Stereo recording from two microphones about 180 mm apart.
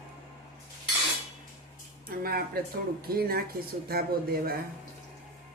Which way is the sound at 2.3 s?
55° right (ahead or behind).